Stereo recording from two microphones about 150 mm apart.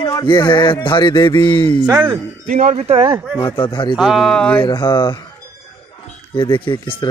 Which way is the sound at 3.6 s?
30° left (ahead or behind).